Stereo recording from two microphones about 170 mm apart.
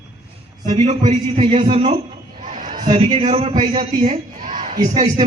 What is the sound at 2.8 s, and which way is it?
A man's voice, 35° right (ahead or behind).